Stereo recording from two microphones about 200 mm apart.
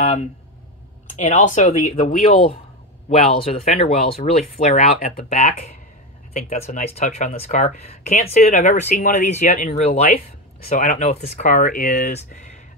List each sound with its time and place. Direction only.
0.0 s a sound: 35° left (ahead or behind)
1.1 s speech: 35° left (ahead or behind)
3.1 s speech: 30° left (ahead or behind)